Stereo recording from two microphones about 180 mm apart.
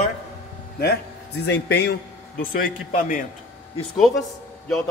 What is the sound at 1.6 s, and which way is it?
Speech, 65° left (ahead or behind).